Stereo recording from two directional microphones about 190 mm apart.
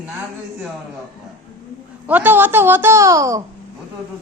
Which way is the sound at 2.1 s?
10° right (ahead or behind).